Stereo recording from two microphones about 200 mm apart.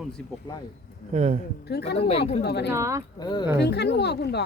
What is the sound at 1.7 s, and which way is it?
Speech, 55° left (ahead or behind).